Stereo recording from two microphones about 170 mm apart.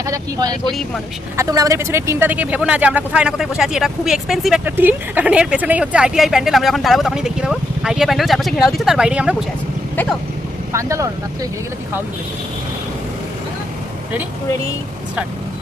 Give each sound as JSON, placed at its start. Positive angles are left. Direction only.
{"t": 0.0, "sound": "speech", "side_deg": -20}
{"t": 0.7, "sound": "speech", "side_deg": 0}
{"t": 1.4, "sound": "speech", "side_deg": -20}
{"t": 9.9, "sound": "speech", "side_deg": 10}
{"t": 10.7, "sound": "speech", "side_deg": -15}